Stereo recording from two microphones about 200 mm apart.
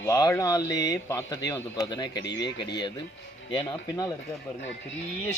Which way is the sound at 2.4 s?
60° left (ahead or behind).